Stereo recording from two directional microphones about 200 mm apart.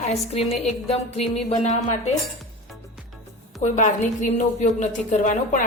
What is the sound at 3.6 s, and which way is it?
A woman's voice, 35° left (ahead or behind).